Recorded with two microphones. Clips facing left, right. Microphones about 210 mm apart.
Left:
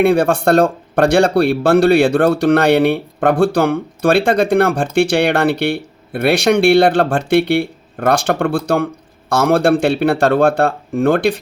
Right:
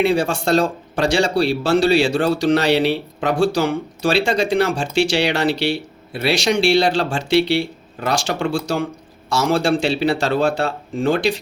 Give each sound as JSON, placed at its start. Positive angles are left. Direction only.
{"t": 0.0, "sound": "speech", "side_deg": 55}